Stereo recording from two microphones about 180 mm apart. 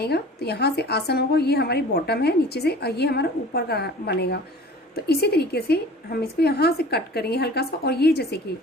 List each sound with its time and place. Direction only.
0.0 s a woman's voice: 65° left (ahead or behind)